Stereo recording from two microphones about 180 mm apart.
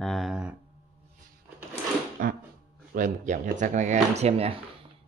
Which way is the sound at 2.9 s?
45° right (ahead or behind).